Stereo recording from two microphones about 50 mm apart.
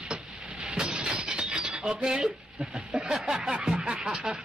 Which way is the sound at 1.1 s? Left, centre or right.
Right.